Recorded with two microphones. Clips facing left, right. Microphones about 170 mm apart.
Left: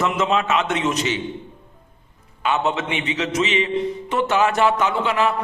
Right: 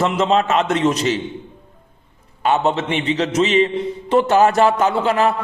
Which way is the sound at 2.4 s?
35° right (ahead or behind).